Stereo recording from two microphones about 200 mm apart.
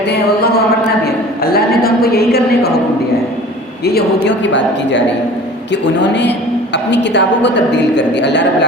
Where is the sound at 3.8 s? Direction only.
55° left (ahead or behind).